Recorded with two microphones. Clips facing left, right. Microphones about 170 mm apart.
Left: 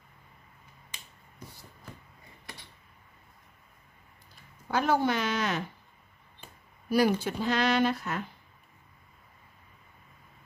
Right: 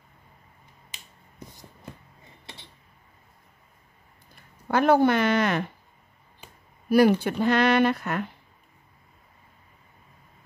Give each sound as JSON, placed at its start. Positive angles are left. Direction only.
{"t": 2.4, "sound": "a sound", "side_deg": -25}
{"t": 4.6, "sound": "speech", "side_deg": -60}
{"t": 6.9, "sound": "speech", "side_deg": -60}